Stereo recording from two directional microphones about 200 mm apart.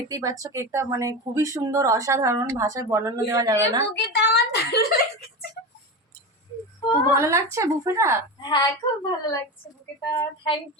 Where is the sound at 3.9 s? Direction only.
55° left (ahead or behind).